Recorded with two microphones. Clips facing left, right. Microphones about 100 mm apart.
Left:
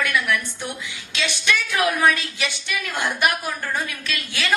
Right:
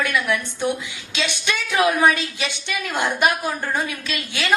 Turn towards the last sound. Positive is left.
turn(degrees=-20)  # may be behind; listen again after turning